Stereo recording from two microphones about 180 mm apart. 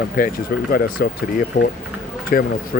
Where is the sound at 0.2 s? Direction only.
50° left (ahead or behind).